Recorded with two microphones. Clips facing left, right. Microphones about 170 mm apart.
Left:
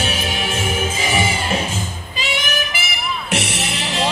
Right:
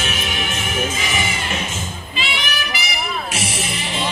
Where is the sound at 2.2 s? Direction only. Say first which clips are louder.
Left 3 dB; 45° left (ahead or behind); by 4.0 s 70° left (ahead or behind).